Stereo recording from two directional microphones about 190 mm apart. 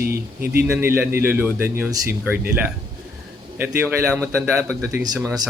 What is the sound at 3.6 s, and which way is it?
Speech, 10° right (ahead or behind).